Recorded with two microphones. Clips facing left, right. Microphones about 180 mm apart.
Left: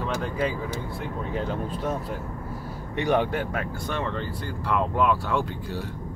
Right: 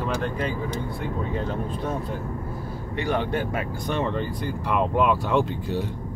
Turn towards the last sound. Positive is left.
turn(degrees=-20)  # may be behind; listen again after turning